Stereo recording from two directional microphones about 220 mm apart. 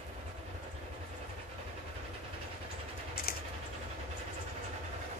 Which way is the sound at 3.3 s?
40° left (ahead or behind).